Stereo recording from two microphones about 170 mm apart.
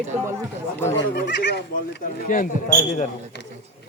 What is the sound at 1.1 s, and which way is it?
Speech, 80° left.